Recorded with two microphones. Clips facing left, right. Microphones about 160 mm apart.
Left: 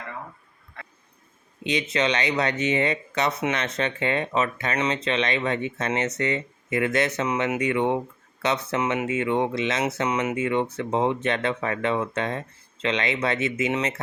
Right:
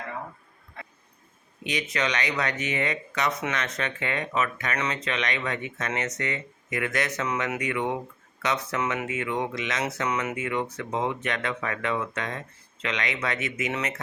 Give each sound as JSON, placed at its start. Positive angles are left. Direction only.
{"t": 1.6, "sound": "speech", "side_deg": 25}